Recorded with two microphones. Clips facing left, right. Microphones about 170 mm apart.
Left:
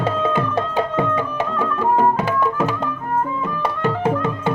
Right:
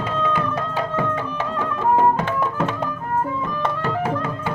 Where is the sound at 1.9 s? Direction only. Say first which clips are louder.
Even; 5° left (ahead or behind).